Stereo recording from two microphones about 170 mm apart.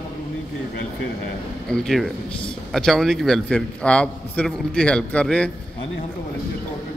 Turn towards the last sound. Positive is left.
turn(degrees=5)  # may be behind; listen again after turning